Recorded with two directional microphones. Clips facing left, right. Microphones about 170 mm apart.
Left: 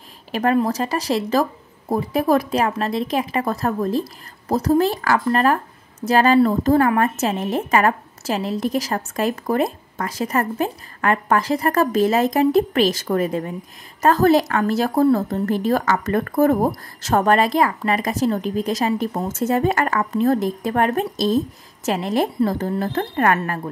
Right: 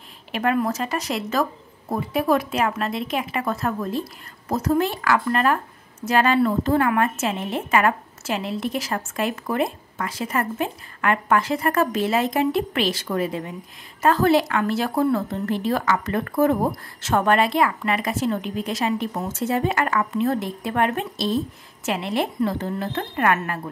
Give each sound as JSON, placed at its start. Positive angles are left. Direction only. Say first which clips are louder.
{"t": 0.3, "sound": "speech", "louder": "left 3 dB", "side_deg": 35}